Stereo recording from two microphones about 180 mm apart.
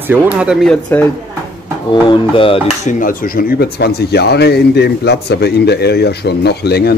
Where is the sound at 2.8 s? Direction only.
50° left (ahead or behind).